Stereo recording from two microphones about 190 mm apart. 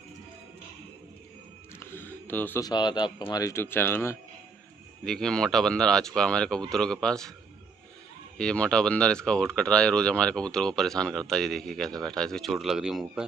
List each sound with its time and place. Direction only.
1.8 s a sound: 10° left (ahead or behind)
2.7 s speech: 25° left (ahead or behind); by 7.3 s 5° left (ahead or behind)
8.4 s speech: 5° left (ahead or behind)